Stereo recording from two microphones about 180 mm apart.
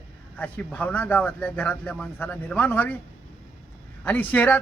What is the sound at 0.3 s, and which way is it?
A man's voice, 10° left (ahead or behind).